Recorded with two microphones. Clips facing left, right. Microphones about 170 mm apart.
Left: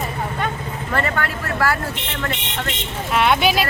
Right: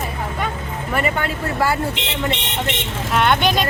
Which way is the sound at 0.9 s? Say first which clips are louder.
Right 1 dB; 20° right (ahead or behind).